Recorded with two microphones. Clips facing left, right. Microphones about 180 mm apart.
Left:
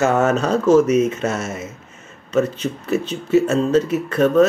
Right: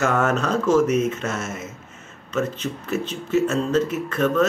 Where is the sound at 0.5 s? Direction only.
30° left (ahead or behind).